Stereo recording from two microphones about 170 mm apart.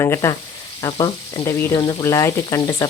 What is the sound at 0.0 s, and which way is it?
Speech, 15° left (ahead or behind).